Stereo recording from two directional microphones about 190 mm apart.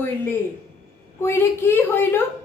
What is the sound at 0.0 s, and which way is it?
A woman's voice, 10° left (ahead or behind).